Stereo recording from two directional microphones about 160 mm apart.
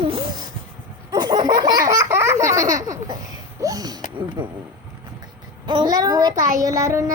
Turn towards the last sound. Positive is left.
turn(degrees=-20)  # may be behind; listen again after turning